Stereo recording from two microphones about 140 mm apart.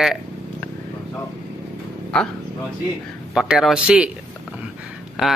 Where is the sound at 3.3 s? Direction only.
5° right (ahead or behind).